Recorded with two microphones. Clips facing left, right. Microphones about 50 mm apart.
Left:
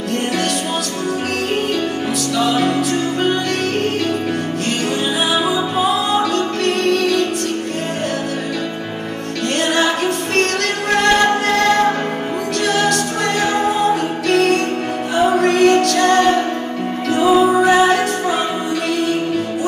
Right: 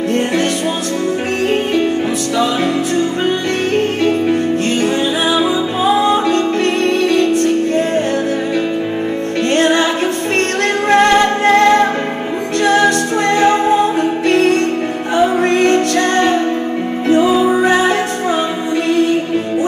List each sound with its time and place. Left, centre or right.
5.8 s music: right
9.5 s music: right
10.9 s music: right
17.6 s music: right